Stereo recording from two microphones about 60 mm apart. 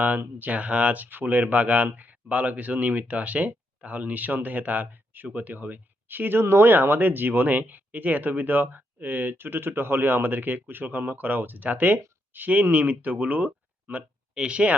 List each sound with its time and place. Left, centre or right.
0.0 s speech: right